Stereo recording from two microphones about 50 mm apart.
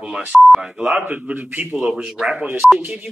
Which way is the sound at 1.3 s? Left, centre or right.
Right.